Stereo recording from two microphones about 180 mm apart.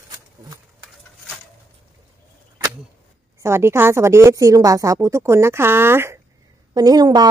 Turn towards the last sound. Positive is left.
turn(degrees=-25)  # may be behind; listen again after turning